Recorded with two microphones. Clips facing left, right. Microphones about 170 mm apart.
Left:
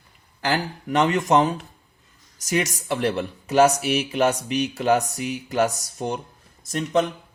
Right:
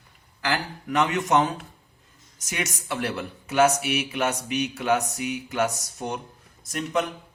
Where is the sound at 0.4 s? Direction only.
35° left (ahead or behind).